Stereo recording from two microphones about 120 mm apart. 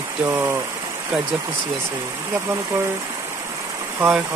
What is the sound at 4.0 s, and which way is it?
Speech, 10° right (ahead or behind).